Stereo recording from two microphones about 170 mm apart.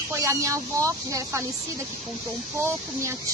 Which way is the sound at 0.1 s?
20° right (ahead or behind).